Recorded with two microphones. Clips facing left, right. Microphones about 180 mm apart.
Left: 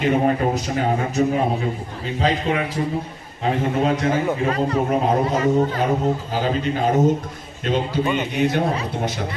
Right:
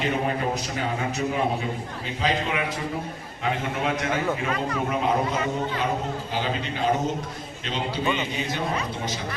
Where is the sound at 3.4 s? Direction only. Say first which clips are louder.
Left 7 dB; 35° left (ahead or behind).